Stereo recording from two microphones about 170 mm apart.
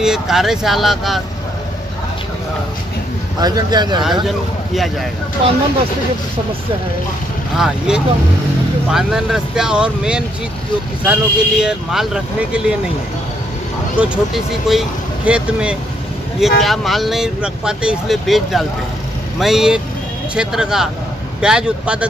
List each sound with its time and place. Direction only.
0.0 s speech: 5° right (ahead or behind)
3.3 s speech: 25° right (ahead or behind)
4.0 s speech: centre (ahead or behind)
7.5 s speech: 5° right (ahead or behind)
13.9 s speech: 5° right (ahead or behind)